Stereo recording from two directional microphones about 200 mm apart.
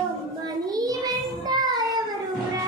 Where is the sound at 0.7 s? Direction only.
20° right (ahead or behind).